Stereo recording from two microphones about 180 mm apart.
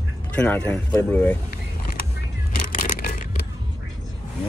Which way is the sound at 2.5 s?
45° left (ahead or behind).